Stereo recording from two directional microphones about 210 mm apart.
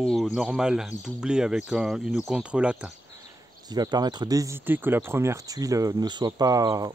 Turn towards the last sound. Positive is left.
turn(degrees=-15)  # may be behind; listen again after turning